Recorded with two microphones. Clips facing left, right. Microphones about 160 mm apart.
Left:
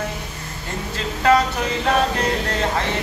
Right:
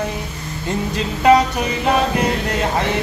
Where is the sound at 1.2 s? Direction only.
15° right (ahead or behind).